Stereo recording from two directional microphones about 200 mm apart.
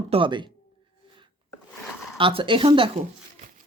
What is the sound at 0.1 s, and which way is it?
Speech, 25° right (ahead or behind).